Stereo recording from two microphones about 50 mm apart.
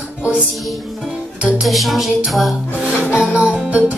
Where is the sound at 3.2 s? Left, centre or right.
Right.